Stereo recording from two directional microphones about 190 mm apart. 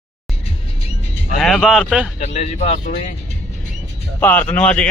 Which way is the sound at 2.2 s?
35° left (ahead or behind).